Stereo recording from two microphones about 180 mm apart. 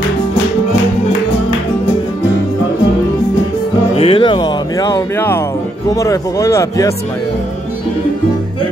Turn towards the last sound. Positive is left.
turn(degrees=15)  # may be behind; listen again after turning